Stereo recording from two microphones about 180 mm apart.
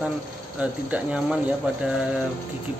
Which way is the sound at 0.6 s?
5° right (ahead or behind).